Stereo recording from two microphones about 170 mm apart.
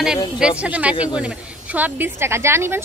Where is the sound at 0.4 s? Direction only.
5° right (ahead or behind).